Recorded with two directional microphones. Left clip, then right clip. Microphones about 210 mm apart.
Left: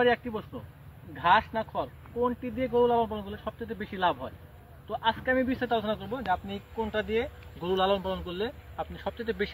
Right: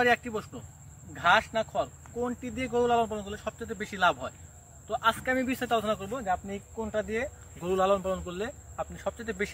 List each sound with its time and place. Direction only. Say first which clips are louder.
0.1 s speech: right 2 dB; 30° right (ahead or behind)